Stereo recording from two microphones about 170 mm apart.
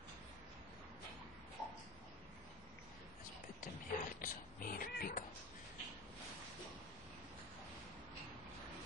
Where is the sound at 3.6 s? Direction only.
55° left (ahead or behind).